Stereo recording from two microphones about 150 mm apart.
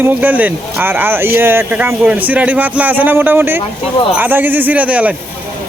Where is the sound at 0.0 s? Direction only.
10° right (ahead or behind).